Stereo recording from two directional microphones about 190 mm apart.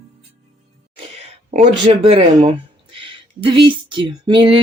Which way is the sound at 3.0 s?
25° right (ahead or behind).